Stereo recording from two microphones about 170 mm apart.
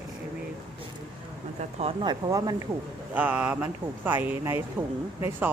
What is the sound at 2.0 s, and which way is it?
Speech, 20° right (ahead or behind).